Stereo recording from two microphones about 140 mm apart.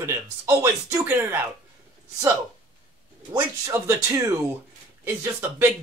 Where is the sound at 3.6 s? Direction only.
20° right (ahead or behind).